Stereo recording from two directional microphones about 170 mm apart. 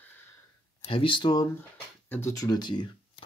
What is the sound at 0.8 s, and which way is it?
Speech, 30° left (ahead or behind).